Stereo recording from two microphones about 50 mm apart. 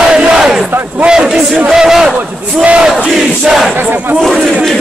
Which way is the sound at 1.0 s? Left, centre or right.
Centre.